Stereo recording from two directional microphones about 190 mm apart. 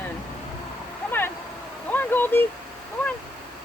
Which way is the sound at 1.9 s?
10° left (ahead or behind).